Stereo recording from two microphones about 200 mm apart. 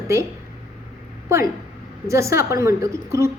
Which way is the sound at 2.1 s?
15° right (ahead or behind).